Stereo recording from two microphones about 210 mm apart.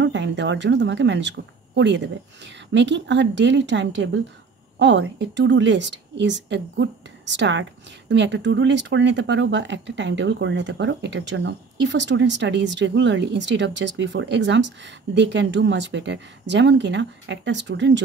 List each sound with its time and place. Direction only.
0.0 s speech: 60° right (ahead or behind)